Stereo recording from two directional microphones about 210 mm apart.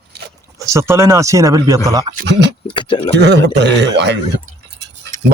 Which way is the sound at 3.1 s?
55° right (ahead or behind).